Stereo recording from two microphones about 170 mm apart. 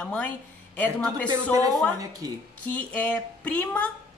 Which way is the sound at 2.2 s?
20° right (ahead or behind).